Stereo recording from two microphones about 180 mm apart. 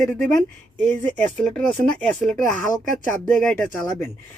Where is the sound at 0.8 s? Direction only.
10° left (ahead or behind).